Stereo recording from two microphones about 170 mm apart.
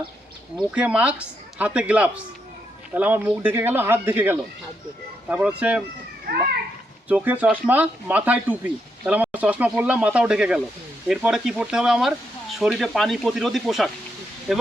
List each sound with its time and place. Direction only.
0.5 s speech: 5° right (ahead or behind)
6.2 s children playing: 65° right (ahead or behind)
7.1 s speech: 10° right (ahead or behind)